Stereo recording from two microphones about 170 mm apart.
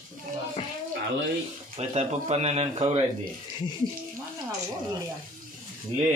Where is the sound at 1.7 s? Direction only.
40° right (ahead or behind).